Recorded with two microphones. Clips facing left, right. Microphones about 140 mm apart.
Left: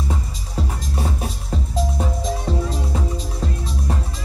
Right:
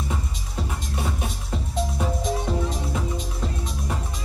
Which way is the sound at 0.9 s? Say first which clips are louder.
Left 3 dB; 35° left (ahead or behind).